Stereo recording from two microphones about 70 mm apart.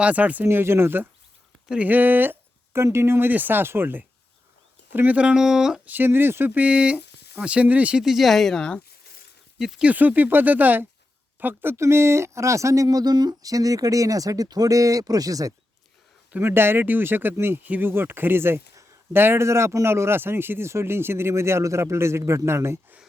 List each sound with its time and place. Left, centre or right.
0.0 s speech: right
0.4 s speech: right
2.8 s speech: right
5.1 s speech: centre
5.8 s speech: right
6.5 s speech: centre
8.0 s speech: centre
9.6 s speech: centre
9.8 s speech: right
11.8 s speech: right
16.4 s speech: right